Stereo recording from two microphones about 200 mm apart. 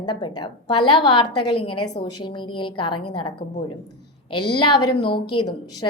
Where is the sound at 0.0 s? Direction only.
25° left (ahead or behind).